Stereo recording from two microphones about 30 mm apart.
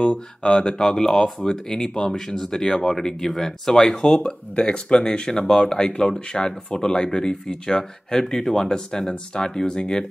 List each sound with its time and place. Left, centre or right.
0.4 s speech: centre
3.9 s speech: left
5.0 s speech: left